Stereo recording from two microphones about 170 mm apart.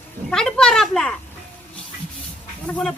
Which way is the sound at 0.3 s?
5° left (ahead or behind).